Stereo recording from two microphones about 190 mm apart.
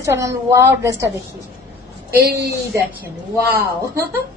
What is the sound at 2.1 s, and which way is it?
Speech, 55° right (ahead or behind).